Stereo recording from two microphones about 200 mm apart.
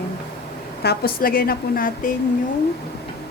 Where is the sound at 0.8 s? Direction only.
45° left (ahead or behind).